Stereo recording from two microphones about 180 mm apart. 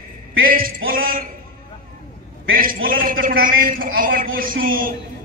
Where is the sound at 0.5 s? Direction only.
50° right (ahead or behind).